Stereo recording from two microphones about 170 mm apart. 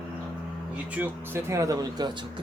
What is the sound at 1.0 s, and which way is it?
Speech, 15° right (ahead or behind).